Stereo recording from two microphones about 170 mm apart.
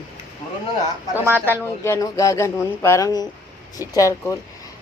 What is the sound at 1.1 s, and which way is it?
Speech, 10° right (ahead or behind).